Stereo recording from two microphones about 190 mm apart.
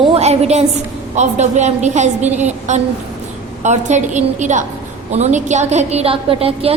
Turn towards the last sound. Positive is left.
turn(degrees=-30)  # may be behind; listen again after turning